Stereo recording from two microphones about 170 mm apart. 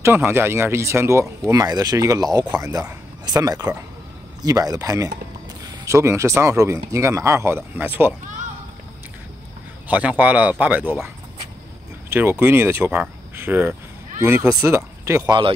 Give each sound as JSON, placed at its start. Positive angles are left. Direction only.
{"t": 0.0, "sound": "speech", "side_deg": -15}
{"t": 9.8, "sound": "speech", "side_deg": -10}
{"t": 12.1, "sound": "speech", "side_deg": -10}